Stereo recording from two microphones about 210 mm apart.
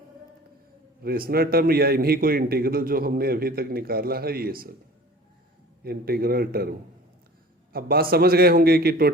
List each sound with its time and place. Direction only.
1.0 s a man's voice: 45° right (ahead or behind)
5.8 s a man's voice: 45° right (ahead or behind)